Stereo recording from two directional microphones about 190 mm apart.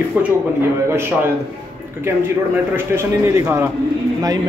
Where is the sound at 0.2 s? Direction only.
10° right (ahead or behind).